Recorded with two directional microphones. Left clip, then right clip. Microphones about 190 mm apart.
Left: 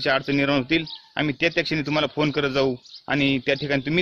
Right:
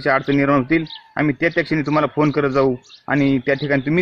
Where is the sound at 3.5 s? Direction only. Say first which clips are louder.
Right 5 dB; 35° left (ahead or behind).